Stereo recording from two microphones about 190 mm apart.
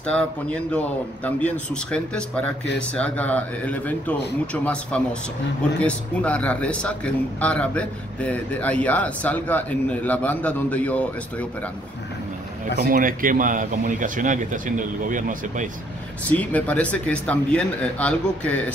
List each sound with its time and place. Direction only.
0.0 s a man's voice: 5° left (ahead or behind)
12.9 s speech: 45° right (ahead or behind)
16.3 s a man's voice: 10° left (ahead or behind)